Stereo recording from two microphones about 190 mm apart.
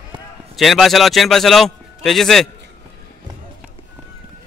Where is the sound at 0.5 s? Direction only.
Centre (ahead or behind).